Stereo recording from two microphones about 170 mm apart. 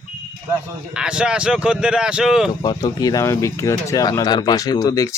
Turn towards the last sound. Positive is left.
turn(degrees=20)  # may be behind; listen again after turning